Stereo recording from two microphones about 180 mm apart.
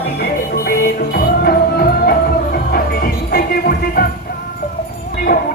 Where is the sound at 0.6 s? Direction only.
55° left (ahead or behind).